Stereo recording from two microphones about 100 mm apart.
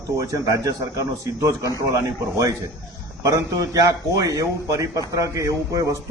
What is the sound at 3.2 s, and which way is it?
A man's voice, 35° right (ahead or behind).